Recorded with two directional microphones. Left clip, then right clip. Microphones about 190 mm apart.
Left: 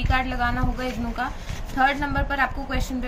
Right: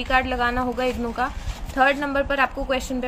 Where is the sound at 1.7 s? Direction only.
50° right (ahead or behind).